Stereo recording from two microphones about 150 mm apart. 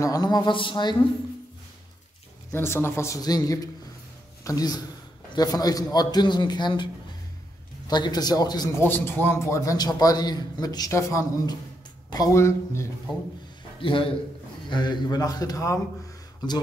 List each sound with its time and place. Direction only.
0.0 s a man's voice: 25° left (ahead or behind)
2.5 s a man's voice: 15° left (ahead or behind)
7.9 s a man's voice: 30° left (ahead or behind)
8.8 s a man's voice: 15° left (ahead or behind)
13.7 s a man's voice: 35° left (ahead or behind)